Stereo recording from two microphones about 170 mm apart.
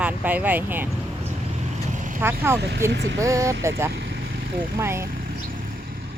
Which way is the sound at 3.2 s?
20° right (ahead or behind).